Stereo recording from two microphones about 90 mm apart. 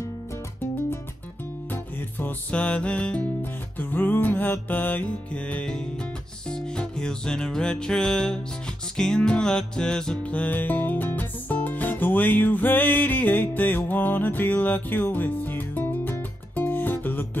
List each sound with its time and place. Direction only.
1.7 s music: 20° left (ahead or behind)